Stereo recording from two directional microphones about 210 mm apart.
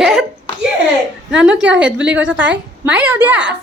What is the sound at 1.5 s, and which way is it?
Speech, 60° right (ahead or behind).